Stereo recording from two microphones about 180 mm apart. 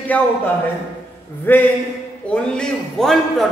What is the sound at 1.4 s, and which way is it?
A man's voice, 10° left (ahead or behind).